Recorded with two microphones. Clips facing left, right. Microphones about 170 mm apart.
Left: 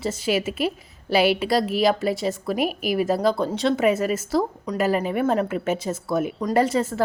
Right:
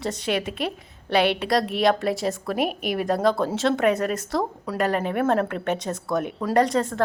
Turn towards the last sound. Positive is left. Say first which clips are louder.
# even
turn(degrees=5)  # may be behind; listen again after turning